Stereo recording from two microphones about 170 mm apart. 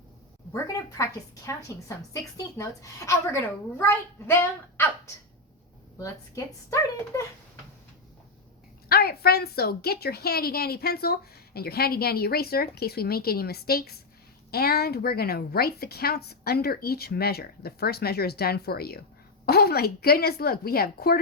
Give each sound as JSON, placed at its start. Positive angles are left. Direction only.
{"t": 0.5, "sound": "a woman's voice", "side_deg": 20}
{"t": 6.0, "sound": "a woman's voice", "side_deg": 20}
{"t": 8.9, "sound": "a woman's voice", "side_deg": 65}